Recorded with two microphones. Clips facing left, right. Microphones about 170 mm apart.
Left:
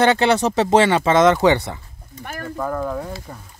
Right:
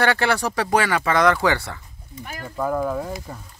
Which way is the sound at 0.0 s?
20° left (ahead or behind).